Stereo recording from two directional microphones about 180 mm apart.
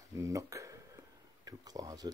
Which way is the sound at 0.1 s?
15° right (ahead or behind).